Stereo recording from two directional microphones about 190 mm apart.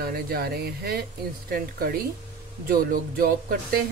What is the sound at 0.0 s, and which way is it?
Speech, 55° right (ahead or behind).